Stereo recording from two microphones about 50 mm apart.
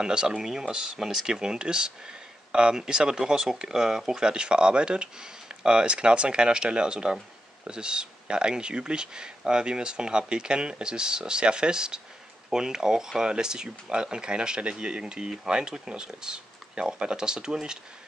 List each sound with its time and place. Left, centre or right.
0.0 s speech: centre